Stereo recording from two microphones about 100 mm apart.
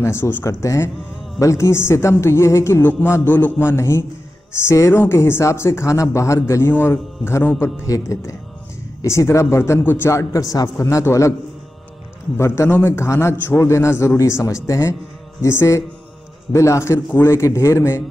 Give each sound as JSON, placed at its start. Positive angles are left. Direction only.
{"t": 0.0, "sound": "speech", "side_deg": 25}
{"t": 12.4, "sound": "speech", "side_deg": 25}